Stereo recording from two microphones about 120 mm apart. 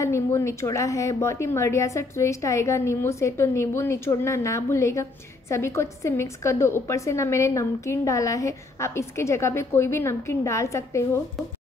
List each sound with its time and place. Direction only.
0.0 s a woman's voice: 25° left (ahead or behind)